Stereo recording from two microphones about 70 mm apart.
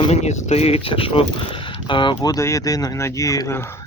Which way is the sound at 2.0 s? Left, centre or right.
Left.